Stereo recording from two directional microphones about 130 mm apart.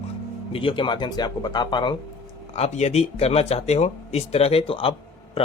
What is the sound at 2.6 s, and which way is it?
Speech, 55° left (ahead or behind).